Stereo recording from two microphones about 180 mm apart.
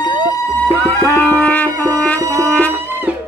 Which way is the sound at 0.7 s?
15° left (ahead or behind).